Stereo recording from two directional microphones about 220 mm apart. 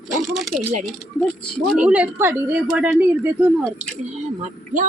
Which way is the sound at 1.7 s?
5° right (ahead or behind).